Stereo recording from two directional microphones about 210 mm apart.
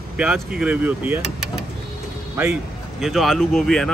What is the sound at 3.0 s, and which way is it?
Speech, centre (ahead or behind).